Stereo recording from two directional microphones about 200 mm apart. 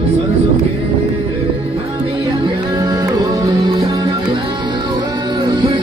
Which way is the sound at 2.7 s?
20° right (ahead or behind).